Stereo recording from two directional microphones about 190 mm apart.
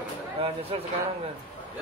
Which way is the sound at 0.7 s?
30° right (ahead or behind).